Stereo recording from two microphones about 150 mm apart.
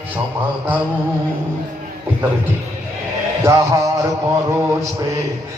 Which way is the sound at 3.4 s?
20° right (ahead or behind).